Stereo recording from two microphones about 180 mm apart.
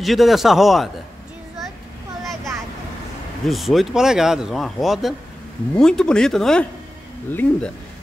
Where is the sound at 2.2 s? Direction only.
Centre (ahead or behind).